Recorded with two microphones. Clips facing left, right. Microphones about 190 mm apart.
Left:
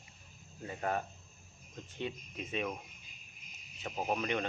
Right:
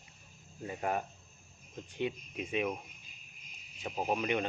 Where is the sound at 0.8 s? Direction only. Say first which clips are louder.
Right 1 dB; 15° right (ahead or behind).